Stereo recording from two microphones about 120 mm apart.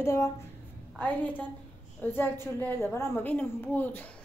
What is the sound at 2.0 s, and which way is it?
A child's voice, 15° left (ahead or behind).